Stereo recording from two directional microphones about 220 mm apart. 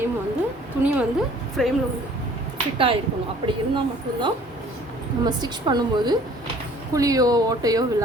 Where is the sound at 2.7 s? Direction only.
25° right (ahead or behind).